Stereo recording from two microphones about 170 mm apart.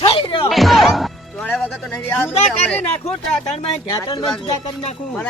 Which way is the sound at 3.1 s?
35° left (ahead or behind).